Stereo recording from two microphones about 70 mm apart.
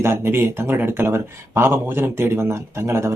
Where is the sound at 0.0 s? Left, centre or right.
Right.